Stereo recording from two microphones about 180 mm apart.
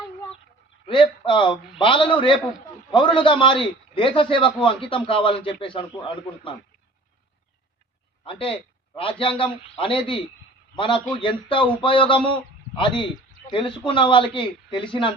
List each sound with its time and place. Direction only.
0.9 s a man's voice: 25° left (ahead or behind)
8.2 s a man's voice: 30° left (ahead or behind)